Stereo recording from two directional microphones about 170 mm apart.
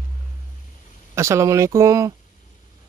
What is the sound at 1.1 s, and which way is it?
Speech, 15° right (ahead or behind).